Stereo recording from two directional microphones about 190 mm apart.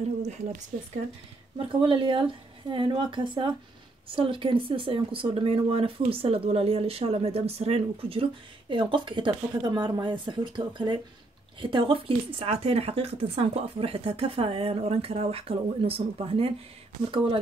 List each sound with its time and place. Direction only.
1.6 s speech: 25° right (ahead or behind)